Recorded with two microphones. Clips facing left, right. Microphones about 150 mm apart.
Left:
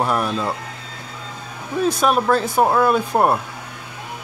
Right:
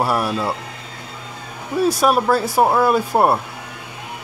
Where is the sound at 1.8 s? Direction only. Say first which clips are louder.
Right 2 dB; 5° right (ahead or behind).